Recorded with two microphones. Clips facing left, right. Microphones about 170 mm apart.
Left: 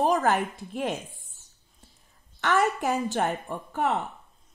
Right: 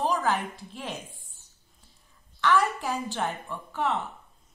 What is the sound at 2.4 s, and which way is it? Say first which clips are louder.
A woman's voice: left 1 dB; 45° left (ahead or behind).